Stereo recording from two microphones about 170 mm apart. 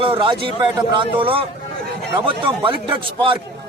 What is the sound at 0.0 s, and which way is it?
A man's voice, 30° right (ahead or behind).